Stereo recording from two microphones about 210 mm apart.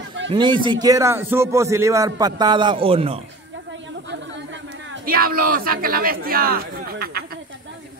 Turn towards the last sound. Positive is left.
turn(degrees=-45)  # may be behind; listen again after turning